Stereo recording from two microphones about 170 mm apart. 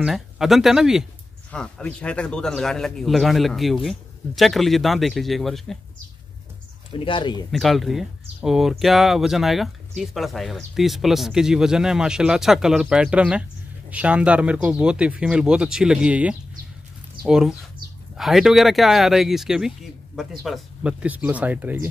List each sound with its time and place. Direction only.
0.0 s speech: centre (ahead or behind)
7.0 s speech: 30° left (ahead or behind)
7.5 s speech: centre (ahead or behind)